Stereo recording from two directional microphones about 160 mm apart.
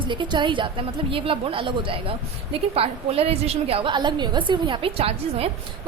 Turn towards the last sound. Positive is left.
turn(degrees=-35)  # may be behind; listen again after turning